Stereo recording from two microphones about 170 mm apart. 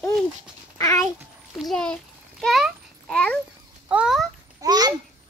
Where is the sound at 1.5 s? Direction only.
Centre (ahead or behind).